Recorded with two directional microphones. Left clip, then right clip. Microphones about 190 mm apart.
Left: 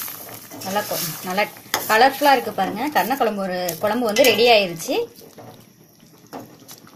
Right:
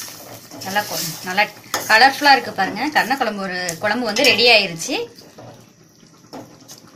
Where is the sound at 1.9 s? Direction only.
45° left (ahead or behind).